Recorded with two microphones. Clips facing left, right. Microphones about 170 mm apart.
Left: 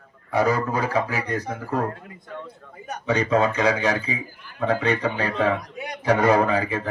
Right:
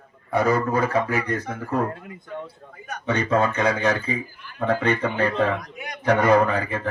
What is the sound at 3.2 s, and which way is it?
A man's voice, 50° right (ahead or behind).